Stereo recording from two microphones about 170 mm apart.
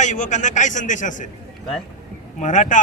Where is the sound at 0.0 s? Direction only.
45° left (ahead or behind).